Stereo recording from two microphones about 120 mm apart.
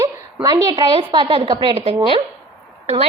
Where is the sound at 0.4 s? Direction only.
30° right (ahead or behind).